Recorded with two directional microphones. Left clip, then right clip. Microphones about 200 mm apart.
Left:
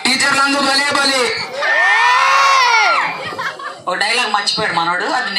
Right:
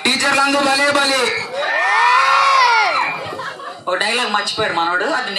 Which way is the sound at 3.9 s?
45° left (ahead or behind).